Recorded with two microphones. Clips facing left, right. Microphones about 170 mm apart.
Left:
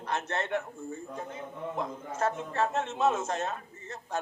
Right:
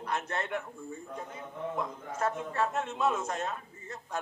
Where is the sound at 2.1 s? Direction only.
40° left (ahead or behind).